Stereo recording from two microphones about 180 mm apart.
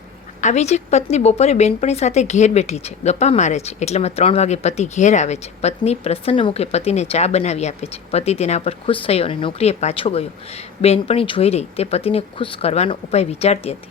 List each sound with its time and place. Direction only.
0.4 s a woman's voice: 40° left (ahead or behind)